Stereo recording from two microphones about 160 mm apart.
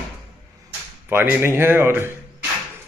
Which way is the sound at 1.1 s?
15° right (ahead or behind).